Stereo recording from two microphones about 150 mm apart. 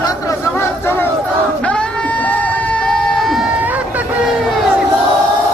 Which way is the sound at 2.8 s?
5° left (ahead or behind).